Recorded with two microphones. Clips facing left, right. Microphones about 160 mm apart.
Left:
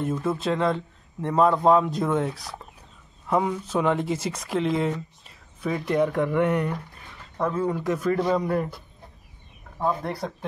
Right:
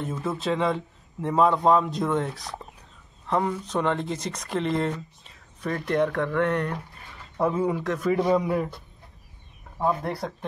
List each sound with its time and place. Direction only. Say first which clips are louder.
0.0 s speech: left 3 dB; centre (ahead or behind)
7.3 s speech: right 1 dB; 10° right (ahead or behind)
7.8 s speech: left 1 dB; 5° left (ahead or behind)
8.1 s speech: right 2 dB; 5° right (ahead or behind)
9.8 s speech: even; 5° right (ahead or behind)